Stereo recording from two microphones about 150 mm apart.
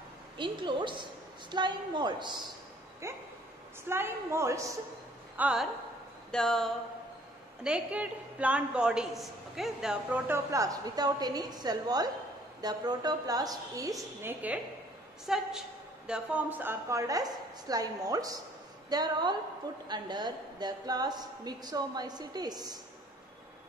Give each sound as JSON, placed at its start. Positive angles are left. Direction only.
{"t": 0.4, "sound": "a woman's voice", "side_deg": -30}
{"t": 3.8, "sound": "a woman's voice", "side_deg": -15}
{"t": 5.4, "sound": "a sound", "side_deg": -5}
{"t": 7.6, "sound": "a woman's voice", "side_deg": -10}
{"t": 15.2, "sound": "a sound", "side_deg": -5}
{"t": 16.1, "sound": "a woman's voice", "side_deg": -10}